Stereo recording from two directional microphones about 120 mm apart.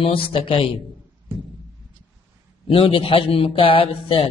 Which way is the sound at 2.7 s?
50° left (ahead or behind).